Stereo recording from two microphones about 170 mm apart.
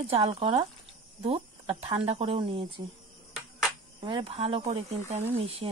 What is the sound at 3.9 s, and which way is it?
Speech, 30° right (ahead or behind).